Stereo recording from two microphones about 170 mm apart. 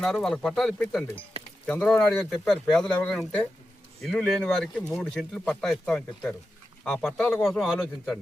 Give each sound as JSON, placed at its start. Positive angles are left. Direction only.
{"t": 0.0, "sound": "speech", "side_deg": 5}